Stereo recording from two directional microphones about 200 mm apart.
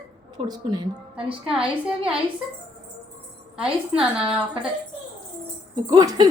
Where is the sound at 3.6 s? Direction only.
5° right (ahead or behind).